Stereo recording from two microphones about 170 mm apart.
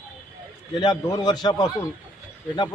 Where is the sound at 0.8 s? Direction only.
25° left (ahead or behind).